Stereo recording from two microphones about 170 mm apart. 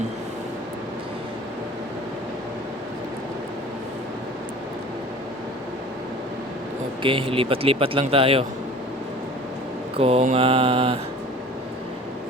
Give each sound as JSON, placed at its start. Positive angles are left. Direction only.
{"t": 7.0, "sound": "speech", "side_deg": -30}
{"t": 10.0, "sound": "speech", "side_deg": -35}